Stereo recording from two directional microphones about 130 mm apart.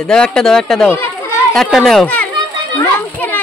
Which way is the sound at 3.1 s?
15° left (ahead or behind).